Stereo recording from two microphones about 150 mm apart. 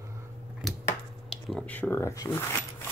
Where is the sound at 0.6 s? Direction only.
Centre (ahead or behind).